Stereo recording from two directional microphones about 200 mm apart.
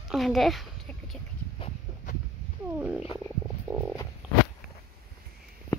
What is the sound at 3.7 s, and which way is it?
Frog, 25° right (ahead or behind).